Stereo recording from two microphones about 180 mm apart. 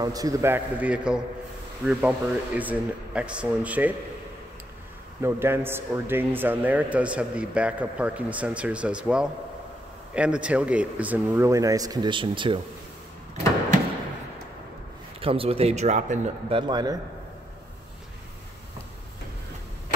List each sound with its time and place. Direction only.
0.0 s speech: 20° right (ahead or behind)
5.2 s speech: 15° right (ahead or behind); by 12.6 s 30° right (ahead or behind)
15.1 s speech: 30° right (ahead or behind)
16.5 s a man's voice: 25° right (ahead or behind)